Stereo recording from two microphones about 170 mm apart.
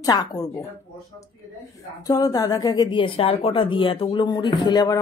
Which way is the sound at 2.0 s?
20° left (ahead or behind).